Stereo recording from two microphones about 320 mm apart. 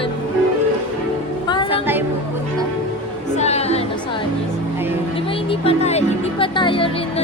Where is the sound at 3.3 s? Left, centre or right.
Centre.